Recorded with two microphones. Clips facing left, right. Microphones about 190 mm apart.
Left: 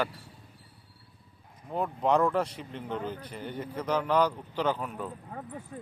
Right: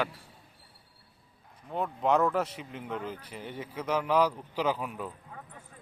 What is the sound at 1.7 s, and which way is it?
Speech, centre (ahead or behind).